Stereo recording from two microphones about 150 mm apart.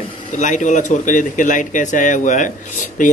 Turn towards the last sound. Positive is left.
turn(degrees=55)  # may be behind; listen again after turning